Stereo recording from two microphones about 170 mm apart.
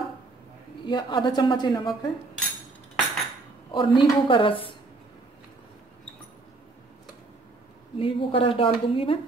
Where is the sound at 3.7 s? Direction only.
30° left (ahead or behind).